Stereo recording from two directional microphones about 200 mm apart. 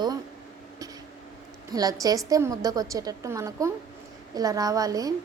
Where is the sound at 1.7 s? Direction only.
20° right (ahead or behind).